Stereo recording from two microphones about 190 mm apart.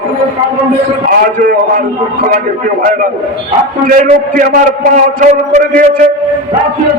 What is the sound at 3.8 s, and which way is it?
A man's voice, 45° right (ahead or behind).